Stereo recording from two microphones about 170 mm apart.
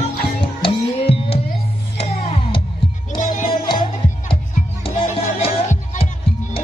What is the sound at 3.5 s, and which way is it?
Music, 30° left (ahead or behind).